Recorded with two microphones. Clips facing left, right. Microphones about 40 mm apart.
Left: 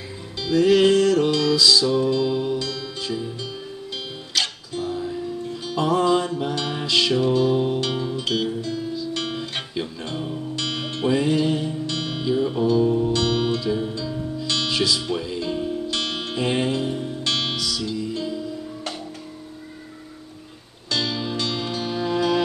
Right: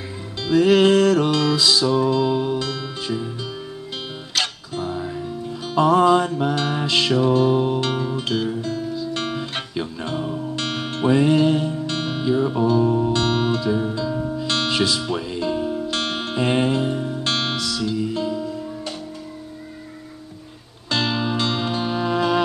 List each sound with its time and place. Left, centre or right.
0.4 s music: right
4.7 s music: right
5.8 s music: right
8.0 s guitar: right
10.5 s music: right
13.7 s music: centre
13.9 s music: right
15.9 s music: right
20.9 s music: right